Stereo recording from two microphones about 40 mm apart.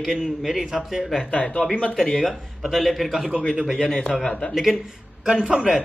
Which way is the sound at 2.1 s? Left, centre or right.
Centre.